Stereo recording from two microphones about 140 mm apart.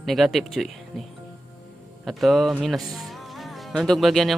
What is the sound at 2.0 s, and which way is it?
Speech, centre (ahead or behind).